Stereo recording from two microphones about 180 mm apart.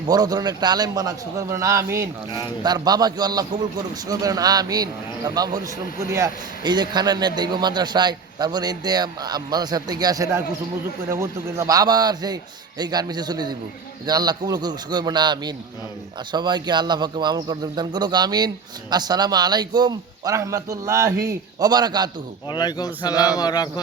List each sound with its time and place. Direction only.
0.1 s speech: 20° right (ahead or behind)
22.4 s a man's voice: 25° left (ahead or behind)